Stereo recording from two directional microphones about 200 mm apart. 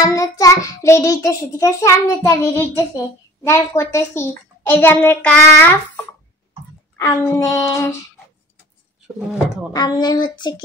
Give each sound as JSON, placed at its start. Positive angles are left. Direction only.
{"t": 0.0, "sound": "child singing", "side_deg": 15}
{"t": 7.0, "sound": "child singing", "side_deg": 15}
{"t": 9.7, "sound": "speech", "side_deg": 20}